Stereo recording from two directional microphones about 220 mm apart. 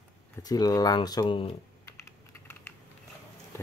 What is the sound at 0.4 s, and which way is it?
Speech, 15° left (ahead or behind).